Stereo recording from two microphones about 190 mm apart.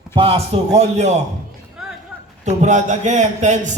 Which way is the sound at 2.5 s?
40° right (ahead or behind).